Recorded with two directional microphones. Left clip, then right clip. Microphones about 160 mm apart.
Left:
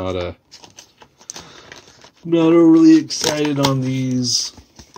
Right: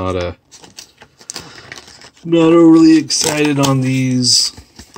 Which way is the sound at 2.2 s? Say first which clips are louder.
Right 3 dB; 5° right (ahead or behind).